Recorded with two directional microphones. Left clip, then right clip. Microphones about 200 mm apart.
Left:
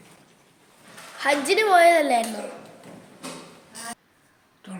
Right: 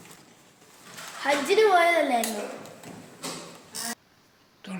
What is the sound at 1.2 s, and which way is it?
A woman's voice, 50° left (ahead or behind).